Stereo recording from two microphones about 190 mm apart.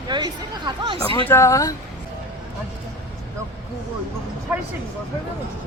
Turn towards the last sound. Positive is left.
turn(degrees=-10)  # may be behind; listen again after turning